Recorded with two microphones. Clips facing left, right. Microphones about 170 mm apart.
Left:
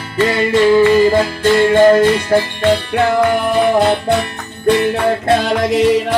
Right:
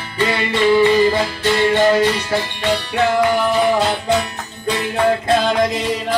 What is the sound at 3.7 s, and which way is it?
Music, 65° left (ahead or behind).